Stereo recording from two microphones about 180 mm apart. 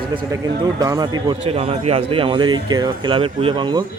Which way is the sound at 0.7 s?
20° right (ahead or behind).